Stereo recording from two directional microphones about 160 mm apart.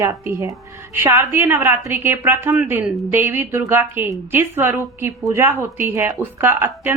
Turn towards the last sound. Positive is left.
turn(degrees=-15)  # may be behind; listen again after turning